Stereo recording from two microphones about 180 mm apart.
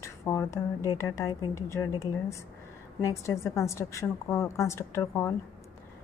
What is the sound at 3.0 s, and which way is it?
A woman's voice, 15° left (ahead or behind).